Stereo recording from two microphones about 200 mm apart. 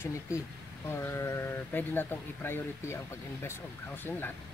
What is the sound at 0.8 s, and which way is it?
Speech, 10° left (ahead or behind).